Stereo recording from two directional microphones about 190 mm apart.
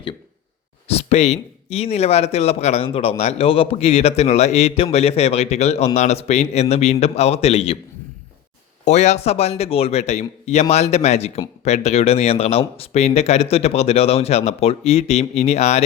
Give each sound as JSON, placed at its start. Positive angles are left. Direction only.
{"t": 0.9, "sound": "a man's voice", "side_deg": 35}
{"t": 8.8, "sound": "a man's voice", "side_deg": 35}